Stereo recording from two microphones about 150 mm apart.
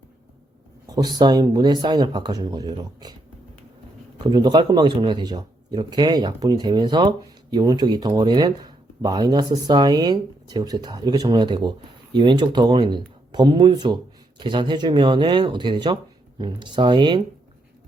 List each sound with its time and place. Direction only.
0.9 s speech: 30° right (ahead or behind)
4.2 s speech: 30° right (ahead or behind)